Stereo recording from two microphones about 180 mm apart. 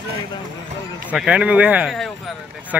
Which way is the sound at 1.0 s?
5° right (ahead or behind).